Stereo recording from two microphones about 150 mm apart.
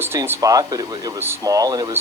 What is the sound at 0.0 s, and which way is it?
Speech, 15° right (ahead or behind).